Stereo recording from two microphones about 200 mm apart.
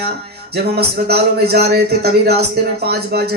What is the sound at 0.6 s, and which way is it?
A man's voice, 55° right (ahead or behind).